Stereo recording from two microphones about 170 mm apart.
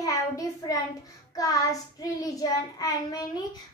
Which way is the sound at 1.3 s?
20° left (ahead or behind).